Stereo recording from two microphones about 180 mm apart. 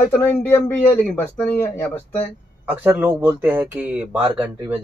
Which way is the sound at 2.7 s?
10° right (ahead or behind).